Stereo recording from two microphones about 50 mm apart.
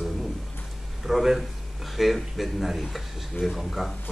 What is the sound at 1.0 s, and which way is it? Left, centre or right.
A man's voice, centre.